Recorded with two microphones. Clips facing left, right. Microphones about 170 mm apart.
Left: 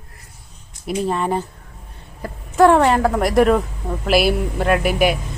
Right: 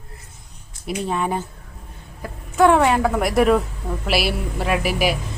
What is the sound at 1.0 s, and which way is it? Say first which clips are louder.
Speech: left 3 dB; centre (ahead or behind).